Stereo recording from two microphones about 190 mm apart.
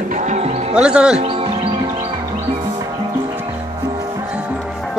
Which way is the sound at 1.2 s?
30° right (ahead or behind).